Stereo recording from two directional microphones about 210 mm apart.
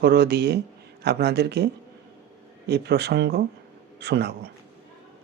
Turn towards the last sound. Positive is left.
turn(degrees=-50)  # may be behind; listen again after turning